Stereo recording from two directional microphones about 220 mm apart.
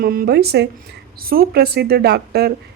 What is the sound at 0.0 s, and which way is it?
A woman's voice, 40° right (ahead or behind).